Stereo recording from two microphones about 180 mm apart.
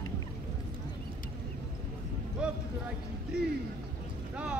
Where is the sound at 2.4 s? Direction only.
5° right (ahead or behind).